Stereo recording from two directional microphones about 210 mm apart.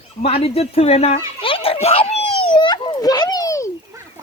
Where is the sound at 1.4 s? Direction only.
25° left (ahead or behind).